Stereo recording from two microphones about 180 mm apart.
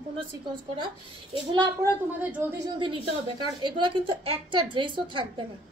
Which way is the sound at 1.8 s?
10° right (ahead or behind).